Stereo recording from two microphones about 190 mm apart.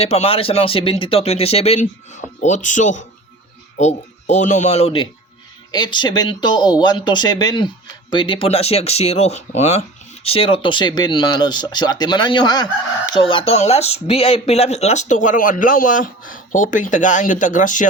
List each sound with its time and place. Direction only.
0.0 s speech: 35° left (ahead or behind)